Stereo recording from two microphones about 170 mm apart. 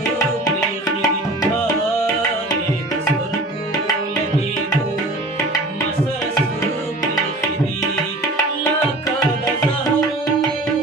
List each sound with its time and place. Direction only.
0.8 s tabla: 20° left (ahead or behind)